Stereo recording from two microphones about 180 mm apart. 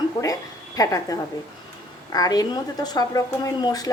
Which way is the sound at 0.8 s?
20° left (ahead or behind).